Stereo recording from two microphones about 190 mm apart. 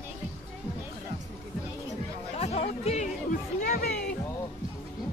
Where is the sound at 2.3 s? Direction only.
35° left (ahead or behind).